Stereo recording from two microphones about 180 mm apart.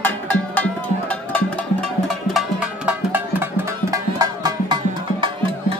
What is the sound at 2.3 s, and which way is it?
Music, 5° right (ahead or behind).